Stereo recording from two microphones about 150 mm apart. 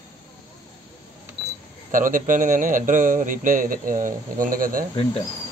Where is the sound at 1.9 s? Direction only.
65° right (ahead or behind).